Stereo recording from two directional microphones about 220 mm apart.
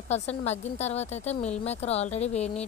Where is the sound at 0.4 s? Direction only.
30° left (ahead or behind).